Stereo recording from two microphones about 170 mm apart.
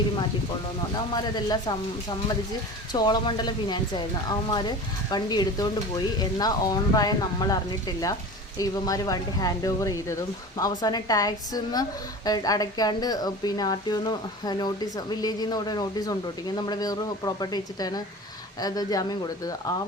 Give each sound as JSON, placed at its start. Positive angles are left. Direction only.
{"t": 0.9, "sound": "a woman's voice", "side_deg": 25}